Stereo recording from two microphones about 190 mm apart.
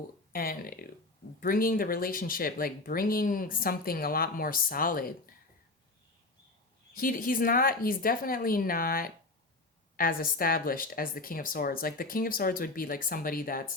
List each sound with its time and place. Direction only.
0.3 s speech: 50° left (ahead or behind)
6.9 s speech: 50° left (ahead or behind)